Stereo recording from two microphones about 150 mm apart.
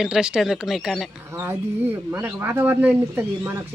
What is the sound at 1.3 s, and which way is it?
Speech, 15° right (ahead or behind).